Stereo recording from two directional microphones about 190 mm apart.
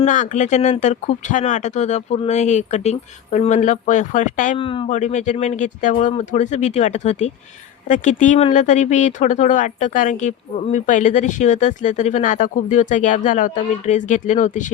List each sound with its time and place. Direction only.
0.0 s speech: 40° left (ahead or behind)
4.5 s speech: 25° left (ahead or behind)
4.9 s speech: 40° left (ahead or behind)